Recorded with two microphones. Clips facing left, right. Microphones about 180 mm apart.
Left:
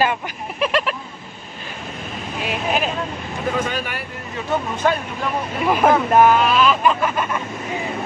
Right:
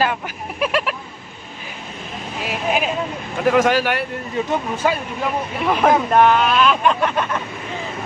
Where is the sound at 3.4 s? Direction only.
90° right.